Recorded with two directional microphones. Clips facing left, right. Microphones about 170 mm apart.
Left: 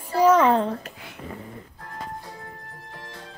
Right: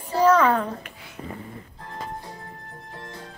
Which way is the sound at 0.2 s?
20° left (ahead or behind).